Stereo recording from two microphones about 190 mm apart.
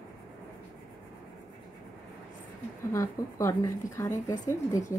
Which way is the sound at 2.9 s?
15° left (ahead or behind).